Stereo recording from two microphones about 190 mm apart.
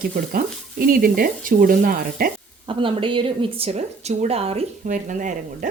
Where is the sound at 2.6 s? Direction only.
25° right (ahead or behind).